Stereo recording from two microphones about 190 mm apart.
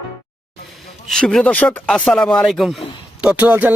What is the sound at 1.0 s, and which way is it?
Speech, centre (ahead or behind).